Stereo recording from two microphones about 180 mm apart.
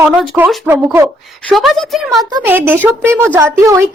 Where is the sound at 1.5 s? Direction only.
Centre (ahead or behind).